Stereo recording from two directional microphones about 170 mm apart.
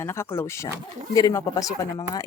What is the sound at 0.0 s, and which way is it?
Speech, 15° left (ahead or behind).